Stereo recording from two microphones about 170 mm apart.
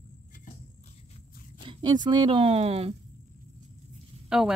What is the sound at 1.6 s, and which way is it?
A woman's voice, 25° right (ahead or behind).